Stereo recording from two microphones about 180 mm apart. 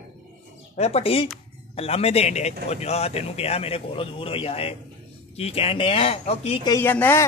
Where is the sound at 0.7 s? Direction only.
35° left (ahead or behind).